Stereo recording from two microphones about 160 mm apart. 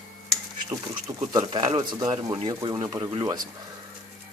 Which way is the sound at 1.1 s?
25° right (ahead or behind).